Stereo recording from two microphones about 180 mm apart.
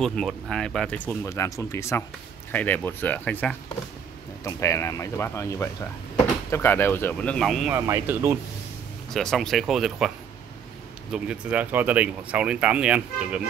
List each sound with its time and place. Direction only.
0.0 s speech: 5° left (ahead or behind)
7.7 s speech: 15° right (ahead or behind)
9.1 s speech: 5° left (ahead or behind)
11.1 s speech: 5° right (ahead or behind)